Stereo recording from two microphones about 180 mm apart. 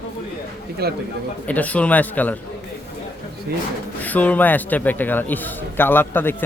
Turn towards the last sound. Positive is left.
turn(degrees=10)  # may be behind; listen again after turning